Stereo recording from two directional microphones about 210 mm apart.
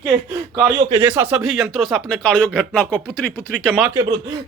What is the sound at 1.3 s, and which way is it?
Speech, centre (ahead or behind).